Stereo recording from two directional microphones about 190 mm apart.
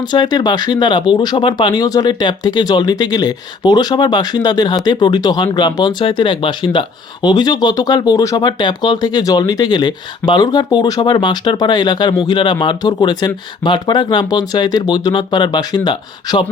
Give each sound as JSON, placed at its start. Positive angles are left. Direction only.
{"t": 0.1, "sound": "speech", "side_deg": 20}